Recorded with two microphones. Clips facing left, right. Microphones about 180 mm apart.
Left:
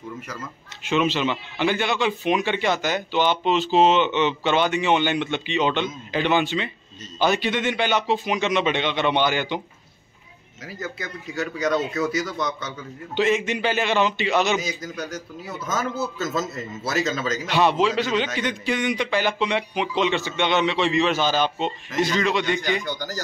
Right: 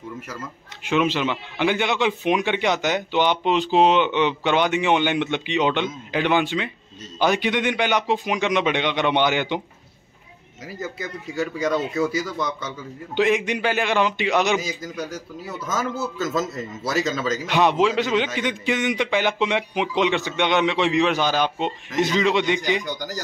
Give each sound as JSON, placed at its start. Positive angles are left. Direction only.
{"t": 0.8, "sound": "a man's voice", "side_deg": -10}
{"t": 10.8, "sound": "a man's voice", "side_deg": -10}
{"t": 16.3, "sound": "a man's voice", "side_deg": -10}